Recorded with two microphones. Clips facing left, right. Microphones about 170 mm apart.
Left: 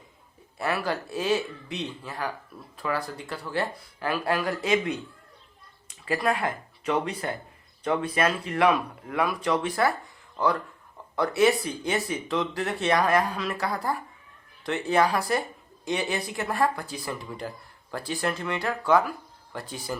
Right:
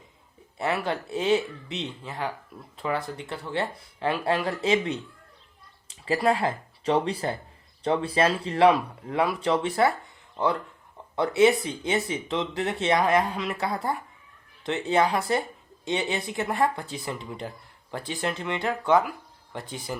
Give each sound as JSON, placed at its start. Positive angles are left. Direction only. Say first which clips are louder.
{"t": 0.6, "sound": "speech", "louder": "right 1 dB", "side_deg": -25}